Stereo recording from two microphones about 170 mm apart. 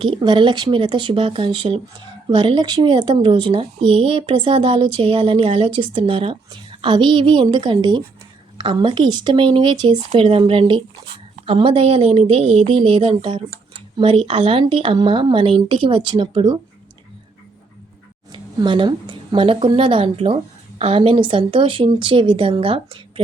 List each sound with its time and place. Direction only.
0.0 s a woman's voice: 30° right (ahead or behind)
18.3 s a woman's voice: 30° right (ahead or behind)